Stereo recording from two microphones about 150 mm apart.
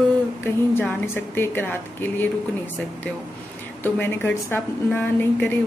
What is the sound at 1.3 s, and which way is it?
Speech, 15° left (ahead or behind).